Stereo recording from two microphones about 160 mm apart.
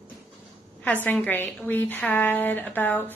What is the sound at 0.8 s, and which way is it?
A woman's voice, 10° left (ahead or behind).